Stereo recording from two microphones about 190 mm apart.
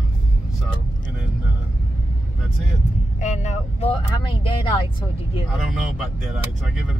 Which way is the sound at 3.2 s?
40° left (ahead or behind).